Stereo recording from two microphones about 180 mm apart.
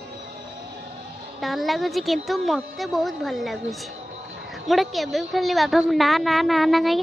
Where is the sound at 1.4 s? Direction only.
Centre (ahead or behind).